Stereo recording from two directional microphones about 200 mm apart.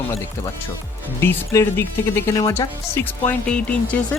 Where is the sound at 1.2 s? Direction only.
10° left (ahead or behind).